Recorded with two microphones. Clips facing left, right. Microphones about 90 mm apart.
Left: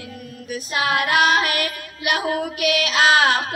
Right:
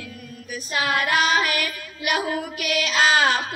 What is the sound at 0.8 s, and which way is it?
Female singing, 60° left (ahead or behind).